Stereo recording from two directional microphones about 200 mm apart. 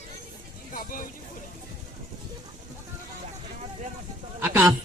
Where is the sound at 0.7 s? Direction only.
45° left (ahead or behind).